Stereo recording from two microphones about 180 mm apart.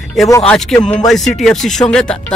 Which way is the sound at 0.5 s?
5° left (ahead or behind).